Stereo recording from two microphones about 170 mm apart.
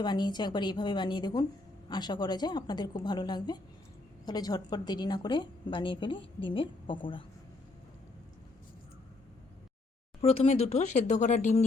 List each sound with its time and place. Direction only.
0.0 s a woman's voice: 25° left (ahead or behind)
10.2 s speech: 35° left (ahead or behind)